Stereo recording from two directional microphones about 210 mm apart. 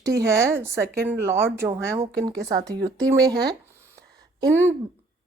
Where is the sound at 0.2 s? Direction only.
15° right (ahead or behind).